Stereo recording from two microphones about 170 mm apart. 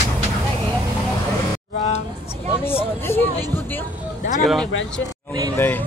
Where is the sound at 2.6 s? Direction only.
15° left (ahead or behind).